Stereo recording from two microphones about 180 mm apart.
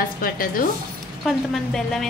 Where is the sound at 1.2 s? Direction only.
Centre (ahead or behind).